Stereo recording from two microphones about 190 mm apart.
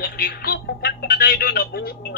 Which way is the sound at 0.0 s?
55° left (ahead or behind).